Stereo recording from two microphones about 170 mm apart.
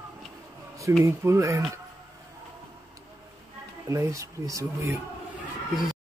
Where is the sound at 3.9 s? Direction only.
15° right (ahead or behind).